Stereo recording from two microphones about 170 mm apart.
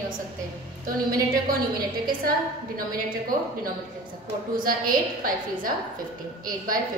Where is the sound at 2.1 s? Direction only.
60° right (ahead or behind).